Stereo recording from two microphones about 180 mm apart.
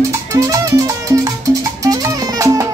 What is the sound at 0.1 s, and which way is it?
Music, 15° right (ahead or behind).